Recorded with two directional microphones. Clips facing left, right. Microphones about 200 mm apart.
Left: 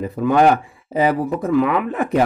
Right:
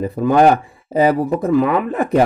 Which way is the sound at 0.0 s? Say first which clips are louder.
Right 2 dB; 35° right (ahead or behind).